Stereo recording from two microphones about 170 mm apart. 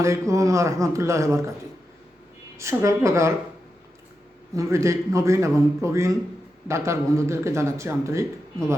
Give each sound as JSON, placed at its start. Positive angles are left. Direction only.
{"t": 0.0, "sound": "a man's voice", "side_deg": -20}
{"t": 2.6, "sound": "a man's voice", "side_deg": -15}
{"t": 4.5, "sound": "a man's voice", "side_deg": -20}